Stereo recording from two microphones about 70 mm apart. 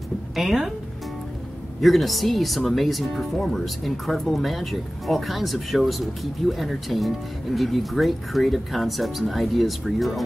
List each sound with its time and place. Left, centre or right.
0.4 s speech: centre
1.8 s speech: centre